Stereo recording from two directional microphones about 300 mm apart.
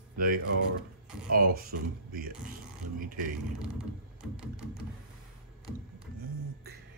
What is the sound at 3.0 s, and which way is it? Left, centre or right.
Speech, right.